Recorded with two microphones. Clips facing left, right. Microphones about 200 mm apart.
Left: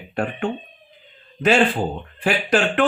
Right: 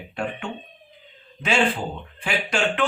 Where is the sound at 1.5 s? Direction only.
50° left (ahead or behind).